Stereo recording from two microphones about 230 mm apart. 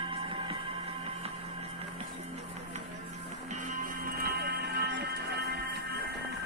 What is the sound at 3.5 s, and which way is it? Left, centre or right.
Music, right.